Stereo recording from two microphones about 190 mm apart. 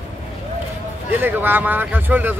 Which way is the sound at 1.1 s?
10° right (ahead or behind).